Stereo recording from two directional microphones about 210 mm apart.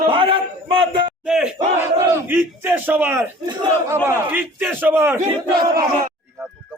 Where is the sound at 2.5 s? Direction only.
10° right (ahead or behind).